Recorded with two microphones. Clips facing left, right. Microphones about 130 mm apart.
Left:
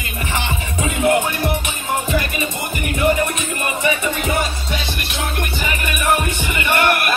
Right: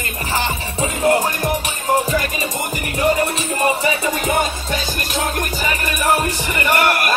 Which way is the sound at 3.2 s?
35° right (ahead or behind).